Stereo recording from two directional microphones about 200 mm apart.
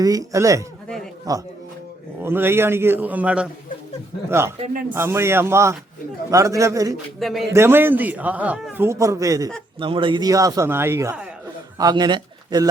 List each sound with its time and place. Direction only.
0.0 s a man's voice: 15° right (ahead or behind)
4.6 s speech: 40° right (ahead or behind)
4.9 s a man's voice: 15° right (ahead or behind)
7.2 s speech: centre (ahead or behind)
7.5 s a man's voice: 10° right (ahead or behind)